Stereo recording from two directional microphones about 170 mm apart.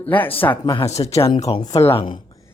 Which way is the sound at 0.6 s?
30° left (ahead or behind).